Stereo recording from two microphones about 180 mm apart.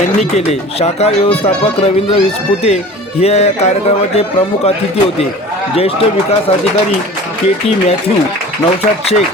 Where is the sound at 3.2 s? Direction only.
35° left (ahead or behind).